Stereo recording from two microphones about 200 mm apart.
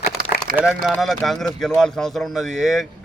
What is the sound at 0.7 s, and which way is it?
Speech, 5° left (ahead or behind).